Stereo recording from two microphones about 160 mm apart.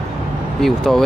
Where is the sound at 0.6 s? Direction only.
Centre (ahead or behind).